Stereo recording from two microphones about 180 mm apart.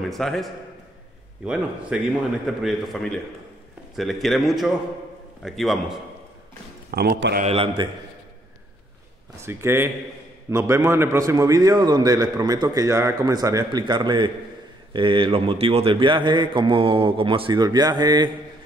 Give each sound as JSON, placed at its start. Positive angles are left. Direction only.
{"t": 0.0, "sound": "a man's voice", "side_deg": 0}
{"t": 6.9, "sound": "a man's voice", "side_deg": -60}
{"t": 7.4, "sound": "a man's voice", "side_deg": -30}
{"t": 9.4, "sound": "a man's voice", "side_deg": -15}